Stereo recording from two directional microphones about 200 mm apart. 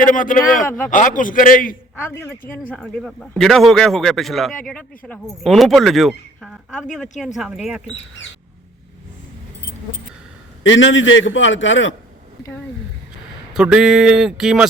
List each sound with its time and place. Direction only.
0.0 s a man's voice: 40° left (ahead or behind)
2.5 s speech: 5° left (ahead or behind)
10.6 s a man's voice: 70° left (ahead or behind)
13.5 s speech: 5° right (ahead or behind)